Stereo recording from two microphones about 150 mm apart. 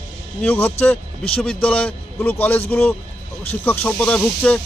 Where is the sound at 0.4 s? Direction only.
15° left (ahead or behind).